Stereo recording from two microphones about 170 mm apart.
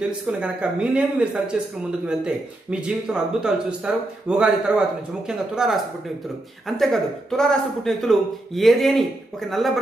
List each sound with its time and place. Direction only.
0.3 s speech: 5° right (ahead or behind)
6.8 s speech: centre (ahead or behind)